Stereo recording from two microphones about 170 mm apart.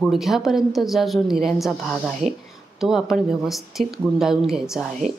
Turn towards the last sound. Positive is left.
turn(degrees=-5)  # may be behind; listen again after turning